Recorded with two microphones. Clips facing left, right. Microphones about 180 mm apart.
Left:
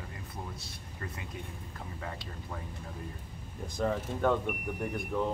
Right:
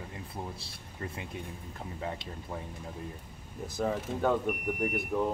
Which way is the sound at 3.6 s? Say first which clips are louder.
Even; 5° right (ahead or behind).